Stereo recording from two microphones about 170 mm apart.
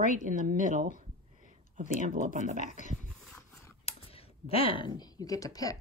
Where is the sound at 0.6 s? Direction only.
50° right (ahead or behind).